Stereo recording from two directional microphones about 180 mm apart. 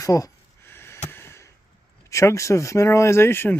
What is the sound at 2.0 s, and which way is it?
Speech, 15° left (ahead or behind).